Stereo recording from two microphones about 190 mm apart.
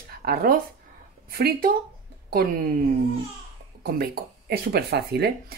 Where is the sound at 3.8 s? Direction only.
55° right (ahead or behind).